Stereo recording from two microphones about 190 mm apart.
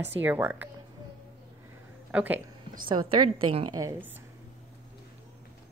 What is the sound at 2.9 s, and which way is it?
A woman's voice, 25° right (ahead or behind).